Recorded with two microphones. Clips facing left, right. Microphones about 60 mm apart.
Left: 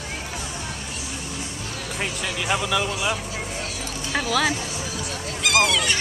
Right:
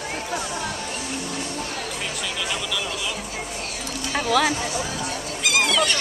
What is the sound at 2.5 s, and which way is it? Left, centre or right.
Speech, left.